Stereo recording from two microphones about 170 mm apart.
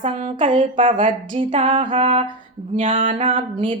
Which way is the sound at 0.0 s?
35° right (ahead or behind).